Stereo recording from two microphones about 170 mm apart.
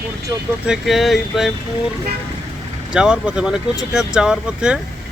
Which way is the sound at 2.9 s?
5° right (ahead or behind).